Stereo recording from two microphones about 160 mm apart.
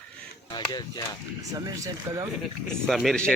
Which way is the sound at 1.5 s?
20° right (ahead or behind).